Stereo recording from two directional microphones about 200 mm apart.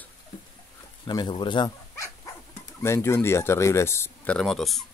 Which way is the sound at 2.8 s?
15° left (ahead or behind).